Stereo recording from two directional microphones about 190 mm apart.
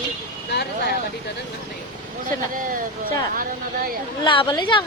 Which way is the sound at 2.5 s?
45° right (ahead or behind).